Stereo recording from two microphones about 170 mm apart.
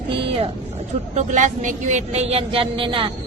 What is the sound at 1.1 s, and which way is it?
A woman's voice, 45° right (ahead or behind).